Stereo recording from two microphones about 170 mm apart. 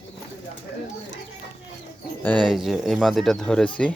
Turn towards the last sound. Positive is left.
turn(degrees=5)  # may be behind; listen again after turning